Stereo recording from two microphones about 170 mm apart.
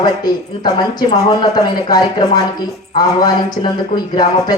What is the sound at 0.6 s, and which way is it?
Speech, 25° left (ahead or behind).